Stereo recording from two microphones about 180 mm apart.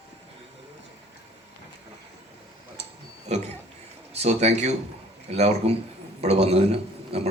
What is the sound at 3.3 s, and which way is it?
A man's voice, 35° right (ahead or behind).